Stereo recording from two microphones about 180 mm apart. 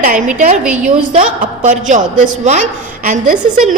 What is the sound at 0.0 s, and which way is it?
A woman's voice, 45° right (ahead or behind).